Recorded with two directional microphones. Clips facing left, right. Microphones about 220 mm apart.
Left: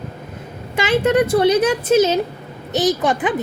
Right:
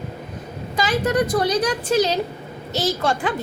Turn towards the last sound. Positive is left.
turn(degrees=20)  # may be behind; listen again after turning